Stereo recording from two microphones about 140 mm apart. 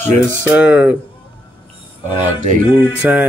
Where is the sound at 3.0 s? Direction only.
10° right (ahead or behind).